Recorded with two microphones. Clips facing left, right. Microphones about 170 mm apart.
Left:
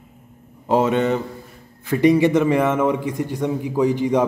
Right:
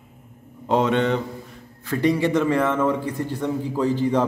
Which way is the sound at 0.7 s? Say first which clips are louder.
Left 2 dB; 5° left (ahead or behind).